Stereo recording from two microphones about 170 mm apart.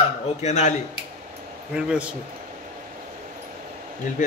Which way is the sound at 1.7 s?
5° right (ahead or behind).